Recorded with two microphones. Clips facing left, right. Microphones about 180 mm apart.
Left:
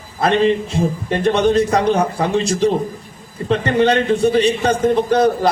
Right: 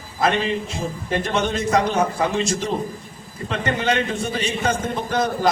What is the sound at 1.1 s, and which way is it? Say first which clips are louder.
A man's voice: left 7 dB; 35° left (ahead or behind).